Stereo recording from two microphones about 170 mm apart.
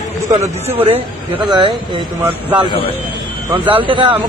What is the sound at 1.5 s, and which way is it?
Speech, 30° right (ahead or behind).